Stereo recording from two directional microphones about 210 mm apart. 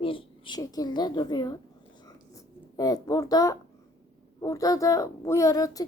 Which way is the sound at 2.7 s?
15° left (ahead or behind).